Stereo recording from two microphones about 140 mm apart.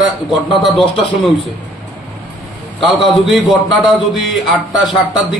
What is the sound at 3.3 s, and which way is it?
A man's voice, centre (ahead or behind).